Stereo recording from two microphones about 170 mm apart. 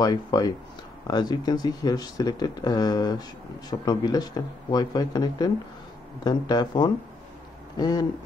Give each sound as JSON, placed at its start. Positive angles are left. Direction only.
{"t": 0.0, "sound": "speech", "side_deg": 25}